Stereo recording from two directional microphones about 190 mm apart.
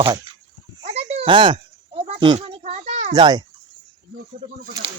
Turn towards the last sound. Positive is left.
turn(degrees=-25)  # may be behind; listen again after turning